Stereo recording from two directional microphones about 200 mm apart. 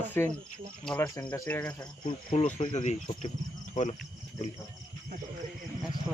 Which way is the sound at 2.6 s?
35° left (ahead or behind).